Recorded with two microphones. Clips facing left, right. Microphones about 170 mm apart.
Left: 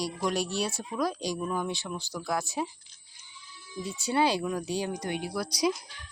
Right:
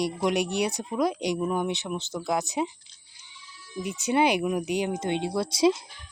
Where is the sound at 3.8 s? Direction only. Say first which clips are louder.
Right 3 dB; 20° right (ahead or behind).